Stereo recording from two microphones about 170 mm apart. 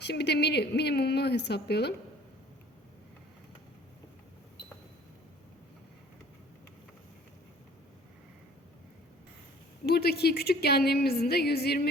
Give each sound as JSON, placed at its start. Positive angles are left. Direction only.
{"t": 0.0, "sound": "a woman's voice", "side_deg": 80}
{"t": 9.8, "sound": "a woman's voice", "side_deg": 70}